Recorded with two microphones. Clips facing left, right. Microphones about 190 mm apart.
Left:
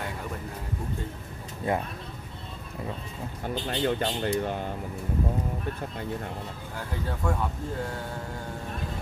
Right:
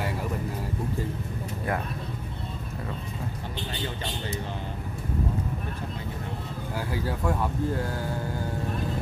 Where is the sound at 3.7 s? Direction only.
55° left (ahead or behind).